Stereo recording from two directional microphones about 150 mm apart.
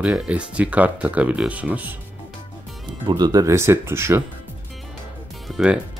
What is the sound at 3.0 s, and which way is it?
Speech, 30° right (ahead or behind).